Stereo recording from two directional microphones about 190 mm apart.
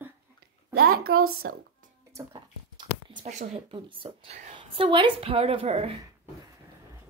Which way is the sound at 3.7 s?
25° right (ahead or behind).